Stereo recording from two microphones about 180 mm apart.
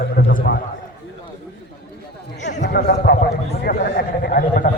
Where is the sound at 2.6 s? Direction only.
65° left (ahead or behind).